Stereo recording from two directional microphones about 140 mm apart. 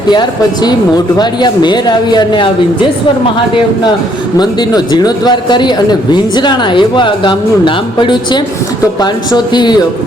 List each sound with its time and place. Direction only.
0.1 s speech: 30° left (ahead or behind)
4.4 s speech: 30° left (ahead or behind)